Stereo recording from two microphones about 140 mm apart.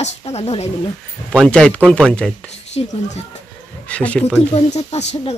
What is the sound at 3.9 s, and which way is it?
Speech, 10° left (ahead or behind).